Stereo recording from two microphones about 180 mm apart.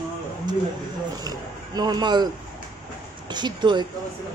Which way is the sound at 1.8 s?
25° right (ahead or behind).